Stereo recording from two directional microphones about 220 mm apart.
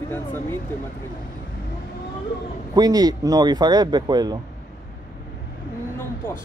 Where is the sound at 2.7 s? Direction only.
15° right (ahead or behind).